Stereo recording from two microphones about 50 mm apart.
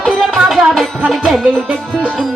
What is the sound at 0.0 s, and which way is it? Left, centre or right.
Music, centre.